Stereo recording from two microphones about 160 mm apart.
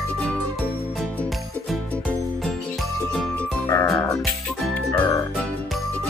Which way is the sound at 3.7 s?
15° left (ahead or behind).